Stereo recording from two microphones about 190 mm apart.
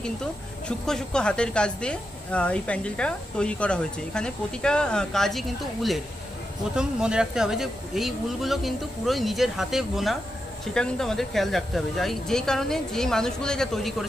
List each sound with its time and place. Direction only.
0.0 s a woman's voice: 5° left (ahead or behind)